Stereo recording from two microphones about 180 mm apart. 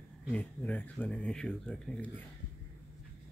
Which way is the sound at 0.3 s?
5° left (ahead or behind).